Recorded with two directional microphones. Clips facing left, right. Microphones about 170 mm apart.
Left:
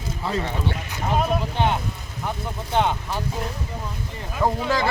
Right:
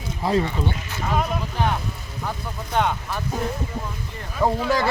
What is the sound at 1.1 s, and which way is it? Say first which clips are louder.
Speech: left 2 dB; 25° left (ahead or behind).